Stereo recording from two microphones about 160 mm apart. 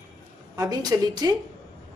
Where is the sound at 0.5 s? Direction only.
25° right (ahead or behind).